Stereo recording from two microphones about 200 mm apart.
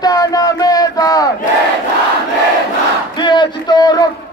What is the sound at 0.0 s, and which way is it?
Battle cry, 20° left (ahead or behind).